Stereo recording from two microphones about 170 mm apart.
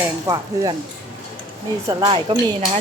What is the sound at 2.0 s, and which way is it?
Speech, 30° right (ahead or behind).